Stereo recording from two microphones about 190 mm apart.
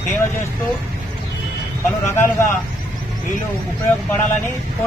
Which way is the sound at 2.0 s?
10° left (ahead or behind).